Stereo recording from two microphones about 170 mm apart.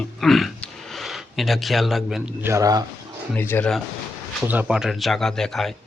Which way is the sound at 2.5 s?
20° right (ahead or behind).